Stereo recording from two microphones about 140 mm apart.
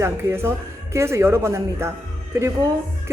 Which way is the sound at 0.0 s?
20° right (ahead or behind).